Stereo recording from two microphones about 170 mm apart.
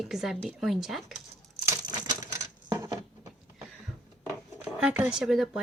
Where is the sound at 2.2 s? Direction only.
20° right (ahead or behind).